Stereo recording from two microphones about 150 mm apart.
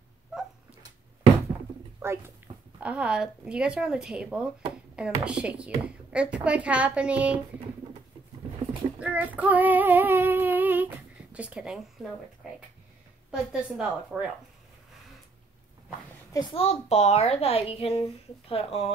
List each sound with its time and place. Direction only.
2.0 s speech: 15° right (ahead or behind)
9.0 s female singing: 10° right (ahead or behind)
11.3 s speech: 10° right (ahead or behind)
13.3 s a woman's voice: 5° right (ahead or behind)
16.3 s a woman's voice: 40° left (ahead or behind)